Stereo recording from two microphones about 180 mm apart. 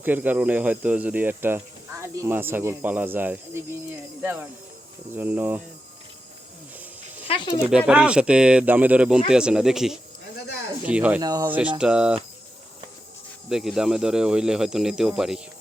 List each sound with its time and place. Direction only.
0.0 s speech: 10° right (ahead or behind)
7.3 s speech: 25° left (ahead or behind)
7.7 s speech: 5° right (ahead or behind)
11.2 s speech: 20° right (ahead or behind)
13.5 s speech: centre (ahead or behind)